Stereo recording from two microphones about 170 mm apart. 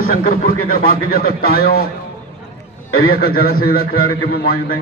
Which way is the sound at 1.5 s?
65° left (ahead or behind).